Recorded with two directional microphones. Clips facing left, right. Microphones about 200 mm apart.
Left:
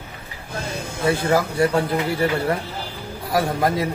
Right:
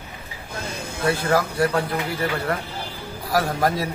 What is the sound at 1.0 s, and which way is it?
Speech, 25° left (ahead or behind).